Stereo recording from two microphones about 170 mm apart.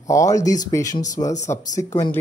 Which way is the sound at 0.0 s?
20° left (ahead or behind).